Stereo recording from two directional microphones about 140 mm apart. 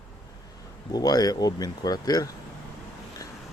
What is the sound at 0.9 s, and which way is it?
Speech, 30° left (ahead or behind).